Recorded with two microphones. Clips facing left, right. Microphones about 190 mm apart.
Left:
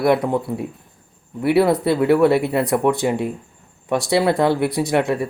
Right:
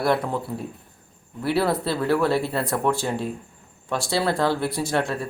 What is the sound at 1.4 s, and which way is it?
Speech, 20° left (ahead or behind).